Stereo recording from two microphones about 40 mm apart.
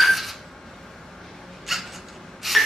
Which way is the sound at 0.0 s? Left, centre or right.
Centre.